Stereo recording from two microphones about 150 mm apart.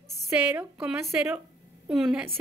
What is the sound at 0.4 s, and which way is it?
Speech, 10° right (ahead or behind).